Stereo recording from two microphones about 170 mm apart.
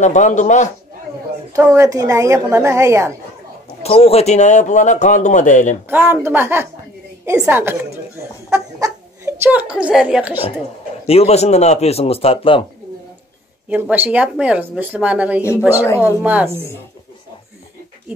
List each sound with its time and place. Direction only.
0.0 s a man's voice: 45° left (ahead or behind)
1.5 s a woman's voice: 15° right (ahead or behind)
3.8 s a man's voice: 35° left (ahead or behind)
5.9 s a woman's voice: 15° right (ahead or behind)
8.5 s chicken: 20° right (ahead or behind)
9.5 s a woman's voice: 10° right (ahead or behind)
11.1 s a man's voice: 35° left (ahead or behind)
13.7 s a woman's voice: 10° right (ahead or behind)
15.7 s speech: 15° left (ahead or behind)
16.2 s a woman's voice: 10° right (ahead or behind)